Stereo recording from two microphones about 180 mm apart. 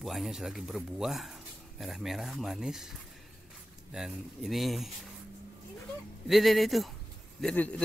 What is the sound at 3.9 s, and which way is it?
Speech, 5° right (ahead or behind).